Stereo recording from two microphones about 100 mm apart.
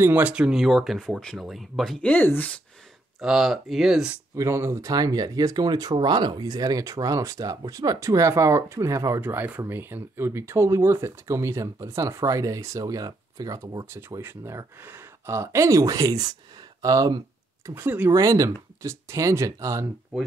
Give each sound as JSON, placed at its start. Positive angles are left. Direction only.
{"t": 0.0, "sound": "speech", "side_deg": -15}
{"t": 2.0, "sound": "speech", "side_deg": 15}
{"t": 3.2, "sound": "speech", "side_deg": -5}
{"t": 4.4, "sound": "speech", "side_deg": -25}
{"t": 9.2, "sound": "speech", "side_deg": -20}
{"t": 13.8, "sound": "speech", "side_deg": -25}
{"t": 17.6, "sound": "speech", "side_deg": -25}
{"t": 18.1, "sound": "speech", "side_deg": -35}